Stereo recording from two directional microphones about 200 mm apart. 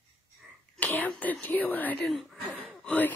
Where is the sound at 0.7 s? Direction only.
10° left (ahead or behind).